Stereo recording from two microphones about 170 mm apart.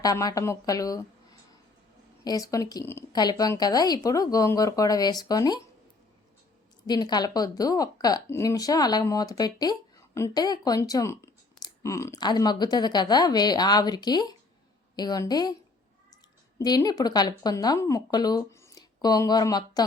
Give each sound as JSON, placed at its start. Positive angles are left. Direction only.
{"t": 0.0, "sound": "a woman's voice", "side_deg": 20}
{"t": 6.8, "sound": "speech", "side_deg": 25}
{"t": 16.6, "sound": "speech", "side_deg": 25}